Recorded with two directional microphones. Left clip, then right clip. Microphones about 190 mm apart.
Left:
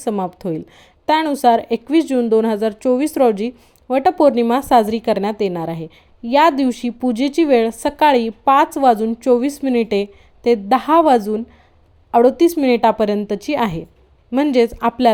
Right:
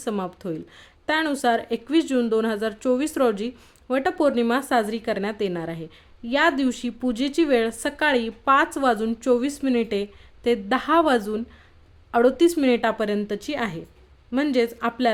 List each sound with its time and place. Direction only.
0.0 s a woman's voice: 15° left (ahead or behind)